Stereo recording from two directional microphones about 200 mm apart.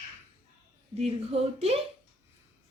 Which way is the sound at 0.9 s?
30° right (ahead or behind).